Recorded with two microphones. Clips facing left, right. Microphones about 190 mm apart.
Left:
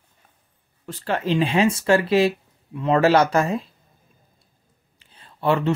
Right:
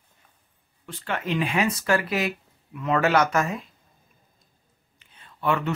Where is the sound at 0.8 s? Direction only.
40° left (ahead or behind).